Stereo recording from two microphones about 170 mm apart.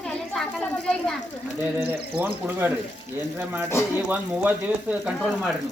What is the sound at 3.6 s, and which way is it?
Speech, 15° left (ahead or behind).